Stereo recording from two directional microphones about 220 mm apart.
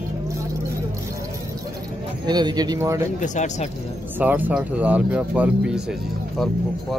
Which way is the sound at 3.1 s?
35° left (ahead or behind).